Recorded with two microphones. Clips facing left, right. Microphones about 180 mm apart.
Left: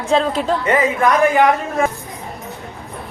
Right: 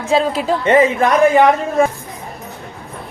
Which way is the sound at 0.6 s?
25° right (ahead or behind).